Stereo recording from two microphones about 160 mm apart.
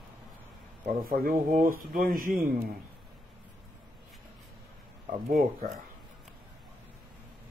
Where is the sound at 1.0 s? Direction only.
60° right (ahead or behind).